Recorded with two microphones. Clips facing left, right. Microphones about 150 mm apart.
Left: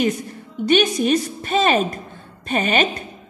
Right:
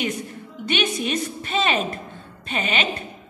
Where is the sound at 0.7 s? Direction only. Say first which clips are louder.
Left 7 dB; 40° left (ahead or behind).